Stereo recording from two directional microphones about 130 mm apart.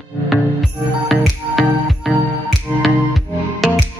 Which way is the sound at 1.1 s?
Centre (ahead or behind).